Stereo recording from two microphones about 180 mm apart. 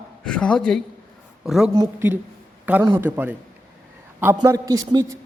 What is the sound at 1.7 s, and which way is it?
A woman's voice, 15° right (ahead or behind).